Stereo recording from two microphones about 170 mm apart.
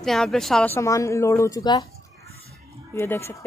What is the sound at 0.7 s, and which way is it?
A woman's voice, 15° left (ahead or behind).